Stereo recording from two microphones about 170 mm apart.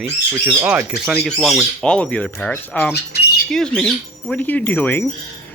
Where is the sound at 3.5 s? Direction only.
5° left (ahead or behind).